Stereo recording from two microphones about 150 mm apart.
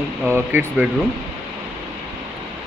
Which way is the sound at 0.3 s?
15° right (ahead or behind).